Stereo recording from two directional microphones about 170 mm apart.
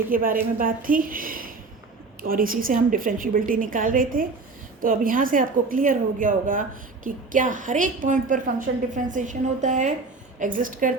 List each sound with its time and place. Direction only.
0.1 s a woman's voice: 55° right (ahead or behind)